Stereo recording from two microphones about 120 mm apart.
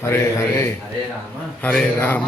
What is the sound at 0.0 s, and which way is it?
Mantra, 20° left (ahead or behind).